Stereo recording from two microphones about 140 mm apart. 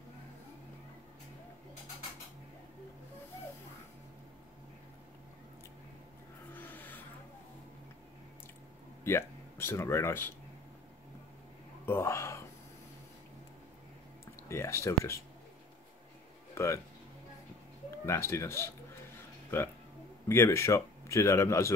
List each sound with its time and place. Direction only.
6.5 s vehicle: 15° left (ahead or behind)
9.0 s speech: 20° left (ahead or behind)
11.8 s a sound: 15° left (ahead or behind)
14.5 s speech: 20° left (ahead or behind)
16.5 s speech: 20° left (ahead or behind)
18.0 s a man's voice: 20° left (ahead or behind)
20.2 s a man's voice: 20° left (ahead or behind)